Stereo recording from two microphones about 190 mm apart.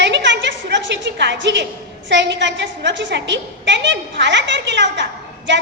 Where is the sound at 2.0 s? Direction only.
70° right (ahead or behind).